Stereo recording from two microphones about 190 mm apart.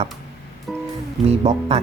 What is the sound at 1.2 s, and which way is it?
Speech, 35° right (ahead or behind).